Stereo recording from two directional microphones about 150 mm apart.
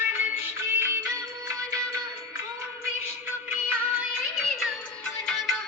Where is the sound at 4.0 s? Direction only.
Centre (ahead or behind).